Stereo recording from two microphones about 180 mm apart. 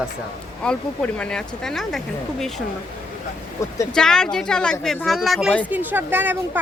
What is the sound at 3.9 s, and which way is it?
A woman's voice, 5° left (ahead or behind).